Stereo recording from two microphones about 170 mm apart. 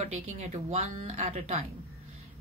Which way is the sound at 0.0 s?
45° right (ahead or behind).